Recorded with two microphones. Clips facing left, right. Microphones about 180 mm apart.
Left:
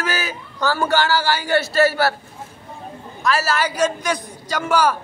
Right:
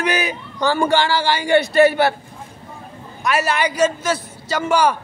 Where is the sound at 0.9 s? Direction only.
5° left (ahead or behind).